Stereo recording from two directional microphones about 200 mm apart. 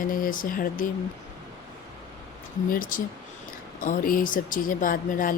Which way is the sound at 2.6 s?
45° left (ahead or behind).